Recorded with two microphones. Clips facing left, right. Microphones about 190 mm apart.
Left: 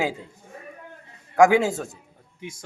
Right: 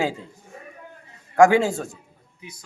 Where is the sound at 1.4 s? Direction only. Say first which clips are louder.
Right 1 dB; 20° left (ahead or behind).